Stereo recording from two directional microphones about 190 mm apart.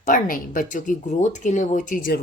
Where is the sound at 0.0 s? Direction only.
45° left (ahead or behind).